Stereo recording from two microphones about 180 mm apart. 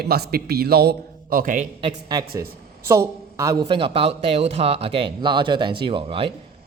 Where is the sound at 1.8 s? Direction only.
25° right (ahead or behind).